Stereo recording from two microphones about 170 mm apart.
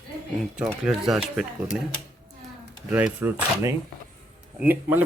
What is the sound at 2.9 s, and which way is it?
Speech, 10° right (ahead or behind).